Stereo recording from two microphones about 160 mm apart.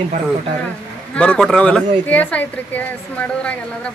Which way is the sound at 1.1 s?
5° left (ahead or behind).